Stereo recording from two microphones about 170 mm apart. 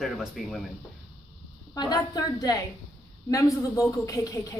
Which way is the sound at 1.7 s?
20° left (ahead or behind).